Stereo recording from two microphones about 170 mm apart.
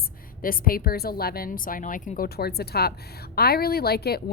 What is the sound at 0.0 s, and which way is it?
A woman's voice, 55° left (ahead or behind).